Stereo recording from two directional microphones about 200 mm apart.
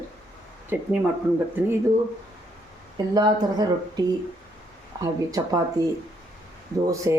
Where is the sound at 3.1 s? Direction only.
20° right (ahead or behind).